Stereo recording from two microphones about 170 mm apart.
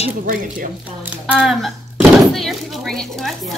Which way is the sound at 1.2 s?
Centre (ahead or behind).